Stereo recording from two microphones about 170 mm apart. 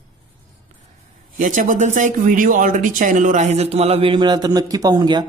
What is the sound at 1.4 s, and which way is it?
Speech, 50° right (ahead or behind).